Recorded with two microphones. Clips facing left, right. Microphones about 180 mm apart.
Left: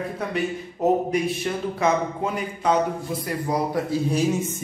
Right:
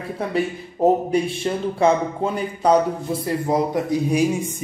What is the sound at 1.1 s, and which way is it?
Speech, 30° right (ahead or behind).